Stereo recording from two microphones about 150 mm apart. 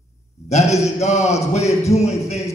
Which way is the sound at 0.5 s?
50° left (ahead or behind).